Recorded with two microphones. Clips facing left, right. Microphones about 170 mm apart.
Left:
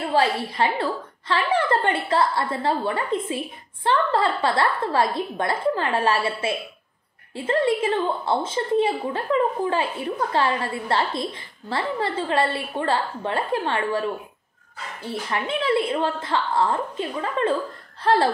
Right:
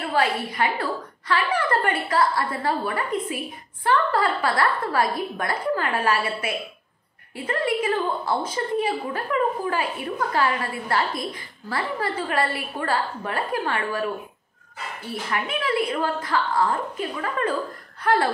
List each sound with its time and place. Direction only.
0.0 s a woman's voice: 25° left (ahead or behind)